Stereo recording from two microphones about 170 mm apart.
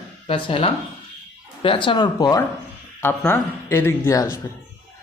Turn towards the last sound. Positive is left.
turn(degrees=15)  # may be behind; listen again after turning